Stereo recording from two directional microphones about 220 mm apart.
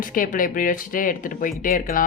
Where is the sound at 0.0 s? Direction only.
40° left (ahead or behind).